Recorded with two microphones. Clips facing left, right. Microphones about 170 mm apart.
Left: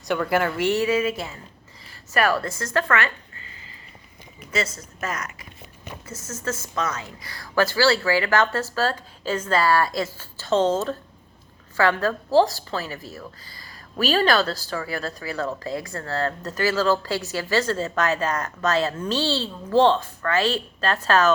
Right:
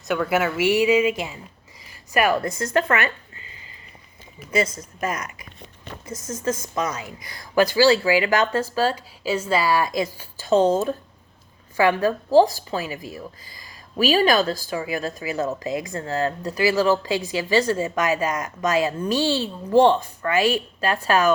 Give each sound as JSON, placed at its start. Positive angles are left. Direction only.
{"t": 0.1, "sound": "a woman's voice", "side_deg": -5}
{"t": 4.9, "sound": "a woman's voice", "side_deg": -20}